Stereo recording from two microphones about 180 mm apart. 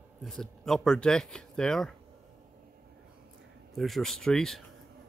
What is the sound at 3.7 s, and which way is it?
Speech, centre (ahead or behind).